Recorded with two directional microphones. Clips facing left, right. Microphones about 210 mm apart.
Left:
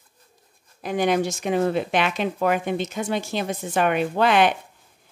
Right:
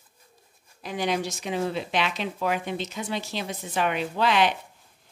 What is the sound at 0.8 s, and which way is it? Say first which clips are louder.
Speech: left 6 dB; 55° left (ahead or behind).